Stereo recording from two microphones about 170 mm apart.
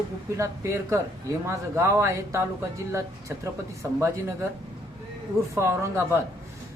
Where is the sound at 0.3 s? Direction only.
15° right (ahead or behind).